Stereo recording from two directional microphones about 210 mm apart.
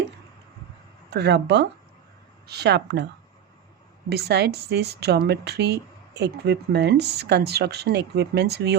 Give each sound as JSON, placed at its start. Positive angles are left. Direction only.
{"t": 1.1, "sound": "a woman's voice", "side_deg": -55}
{"t": 4.1, "sound": "a woman's voice", "side_deg": -50}